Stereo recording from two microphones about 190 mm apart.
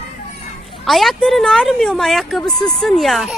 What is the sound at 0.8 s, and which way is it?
Speech, centre (ahead or behind).